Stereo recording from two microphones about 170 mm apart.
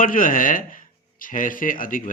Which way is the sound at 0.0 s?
55° left (ahead or behind).